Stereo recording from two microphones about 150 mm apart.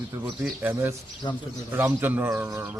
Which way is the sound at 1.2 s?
30° left (ahead or behind).